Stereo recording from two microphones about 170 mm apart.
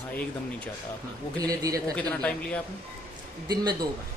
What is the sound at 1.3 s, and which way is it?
Speech, 20° right (ahead or behind).